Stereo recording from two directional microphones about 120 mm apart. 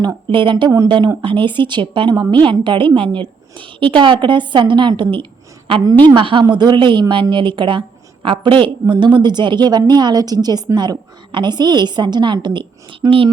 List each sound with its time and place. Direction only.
0.3 s a woman's voice: 45° right (ahead or behind)